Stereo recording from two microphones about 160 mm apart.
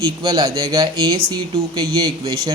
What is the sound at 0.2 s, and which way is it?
Speech, 25° right (ahead or behind).